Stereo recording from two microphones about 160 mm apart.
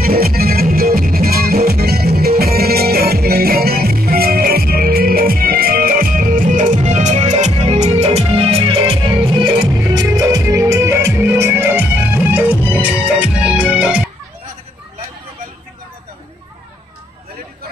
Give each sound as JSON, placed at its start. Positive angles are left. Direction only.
{"t": 0.0, "sound": "music", "side_deg": -70}